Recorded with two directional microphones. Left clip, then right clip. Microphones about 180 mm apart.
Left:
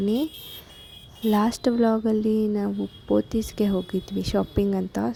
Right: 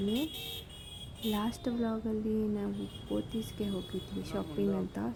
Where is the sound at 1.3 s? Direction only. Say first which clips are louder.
Left 14 dB; 35° left (ahead or behind).